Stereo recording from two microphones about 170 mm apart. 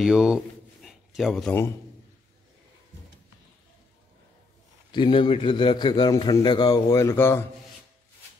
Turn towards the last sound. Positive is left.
turn(degrees=15)  # may be behind; listen again after turning